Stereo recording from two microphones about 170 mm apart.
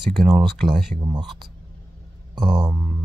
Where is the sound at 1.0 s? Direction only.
25° right (ahead or behind).